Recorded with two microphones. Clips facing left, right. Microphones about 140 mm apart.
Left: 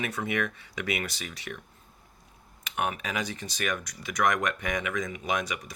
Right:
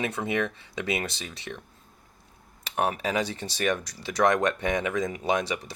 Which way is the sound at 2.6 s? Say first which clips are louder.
Right 4 dB; 35° right (ahead or behind).